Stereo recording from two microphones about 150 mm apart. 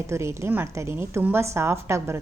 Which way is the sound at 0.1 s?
20° right (ahead or behind).